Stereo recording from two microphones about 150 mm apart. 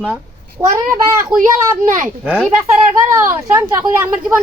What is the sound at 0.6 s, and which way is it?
Speech, 15° right (ahead or behind).